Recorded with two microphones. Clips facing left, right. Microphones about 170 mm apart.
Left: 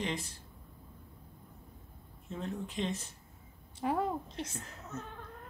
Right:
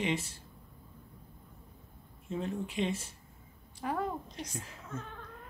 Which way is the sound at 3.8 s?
25° left (ahead or behind).